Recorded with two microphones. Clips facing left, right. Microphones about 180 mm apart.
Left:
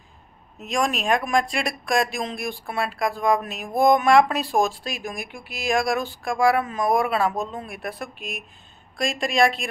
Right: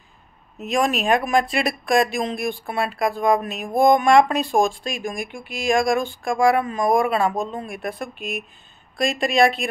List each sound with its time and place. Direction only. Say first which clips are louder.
0.6 s speech: right 3 dB; centre (ahead or behind)